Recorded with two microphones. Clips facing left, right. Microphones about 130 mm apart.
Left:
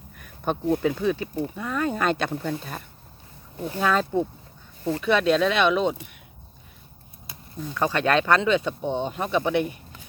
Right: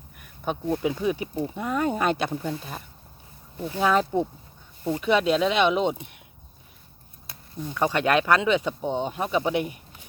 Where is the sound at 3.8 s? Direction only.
20° right (ahead or behind).